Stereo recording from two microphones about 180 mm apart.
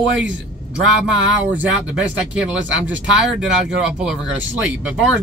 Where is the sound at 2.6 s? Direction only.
90° right.